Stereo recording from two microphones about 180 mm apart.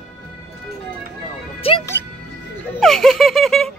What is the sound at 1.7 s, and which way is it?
Music, 30° left (ahead or behind).